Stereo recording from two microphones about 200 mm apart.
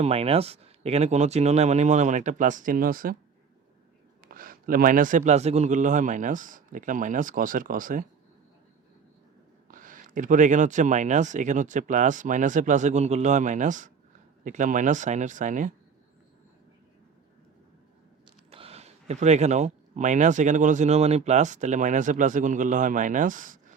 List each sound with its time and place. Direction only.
0.0 s speech: 30° right (ahead or behind); by 3.2 s 45° right (ahead or behind)
4.3 s speech: 45° right (ahead or behind)
9.6 s speech: 40° right (ahead or behind)
18.5 s speech: 30° right (ahead or behind)